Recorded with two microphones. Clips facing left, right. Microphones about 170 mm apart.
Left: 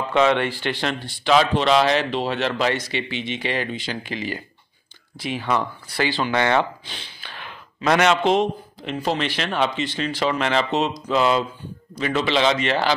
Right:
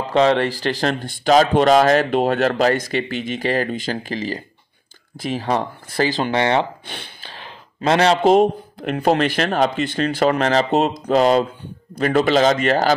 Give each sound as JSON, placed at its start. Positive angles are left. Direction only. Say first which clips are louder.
{"t": 0.1, "sound": "speech", "louder": "right 3 dB", "side_deg": -35}
{"t": 6.3, "sound": "speech", "louder": "left 1 dB", "side_deg": -30}